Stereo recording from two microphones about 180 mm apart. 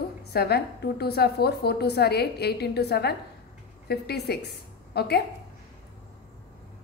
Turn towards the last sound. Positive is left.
turn(degrees=65)  # may be behind; listen again after turning